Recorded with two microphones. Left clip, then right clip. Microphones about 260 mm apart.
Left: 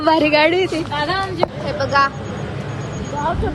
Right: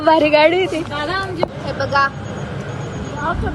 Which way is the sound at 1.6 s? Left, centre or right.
Centre.